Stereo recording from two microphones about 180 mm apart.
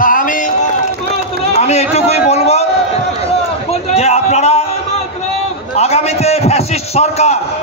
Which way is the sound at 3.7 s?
35° left (ahead or behind).